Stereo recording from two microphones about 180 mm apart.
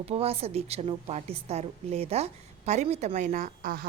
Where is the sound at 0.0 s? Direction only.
35° right (ahead or behind).